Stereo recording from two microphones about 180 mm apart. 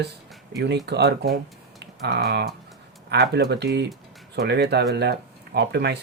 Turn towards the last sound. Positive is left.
turn(degrees=-65)  # may be behind; listen again after turning